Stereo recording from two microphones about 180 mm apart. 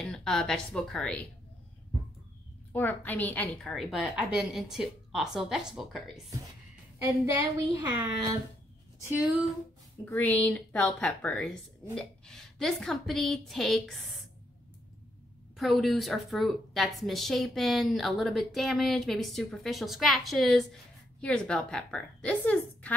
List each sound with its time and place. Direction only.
0.0 s a woman's voice: 5° left (ahead or behind)
2.7 s a woman's voice: 10° left (ahead or behind)
7.1 s a woman's voice: 15° right (ahead or behind)
9.0 s speech: 10° right (ahead or behind)
10.0 s a woman's voice: 10° left (ahead or behind)
15.5 s a woman's voice: centre (ahead or behind)